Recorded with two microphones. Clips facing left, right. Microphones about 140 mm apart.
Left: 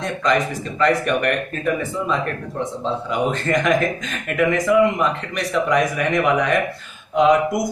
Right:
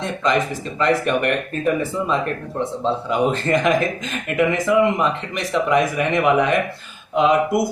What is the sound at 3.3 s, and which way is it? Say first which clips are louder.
Speech: even; 25° right (ahead or behind).